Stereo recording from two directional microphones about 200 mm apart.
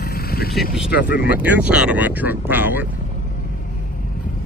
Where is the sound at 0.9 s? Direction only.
55° left (ahead or behind).